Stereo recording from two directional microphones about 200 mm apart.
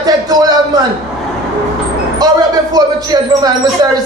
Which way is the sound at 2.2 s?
20° right (ahead or behind).